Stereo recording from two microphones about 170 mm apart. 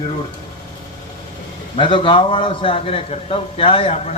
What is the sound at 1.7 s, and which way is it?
Speech, 30° left (ahead or behind).